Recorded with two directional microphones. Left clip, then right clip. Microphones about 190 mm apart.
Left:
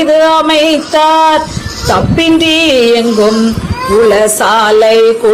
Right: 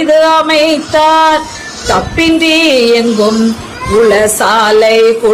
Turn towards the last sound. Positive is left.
turn(degrees=15)  # may be behind; listen again after turning